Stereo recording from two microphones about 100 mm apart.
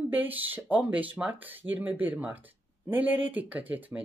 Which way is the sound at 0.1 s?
15° right (ahead or behind).